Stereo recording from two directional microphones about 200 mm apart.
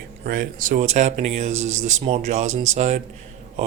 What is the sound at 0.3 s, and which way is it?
Speech, 45° right (ahead or behind).